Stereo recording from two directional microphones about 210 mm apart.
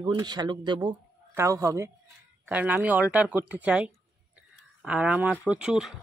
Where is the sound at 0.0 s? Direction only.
20° right (ahead or behind).